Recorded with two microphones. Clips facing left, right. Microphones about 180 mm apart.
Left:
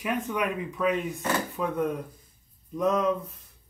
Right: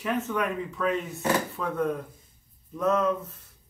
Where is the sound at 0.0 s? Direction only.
10° left (ahead or behind).